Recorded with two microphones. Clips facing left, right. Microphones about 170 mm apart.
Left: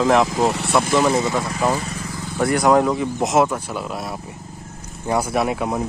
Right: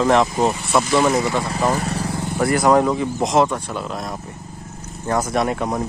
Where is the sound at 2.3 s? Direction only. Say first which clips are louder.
Even; centre (ahead or behind).